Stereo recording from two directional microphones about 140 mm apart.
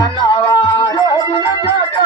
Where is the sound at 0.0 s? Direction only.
30° left (ahead or behind).